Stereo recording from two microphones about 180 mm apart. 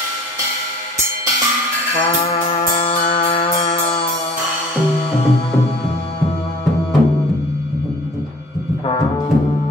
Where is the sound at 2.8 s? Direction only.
30° left (ahead or behind).